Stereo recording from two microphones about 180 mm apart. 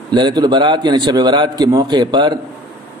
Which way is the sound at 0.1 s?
25° right (ahead or behind).